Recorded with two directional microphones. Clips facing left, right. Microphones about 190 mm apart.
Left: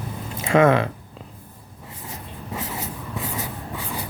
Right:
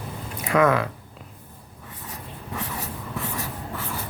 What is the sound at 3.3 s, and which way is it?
Writing, 15° left (ahead or behind).